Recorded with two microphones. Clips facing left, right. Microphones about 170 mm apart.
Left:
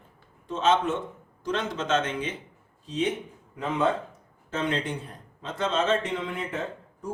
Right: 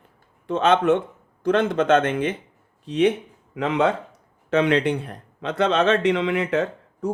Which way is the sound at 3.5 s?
80° right.